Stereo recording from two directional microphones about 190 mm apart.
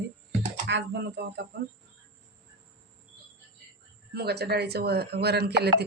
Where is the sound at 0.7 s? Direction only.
70° right (ahead or behind).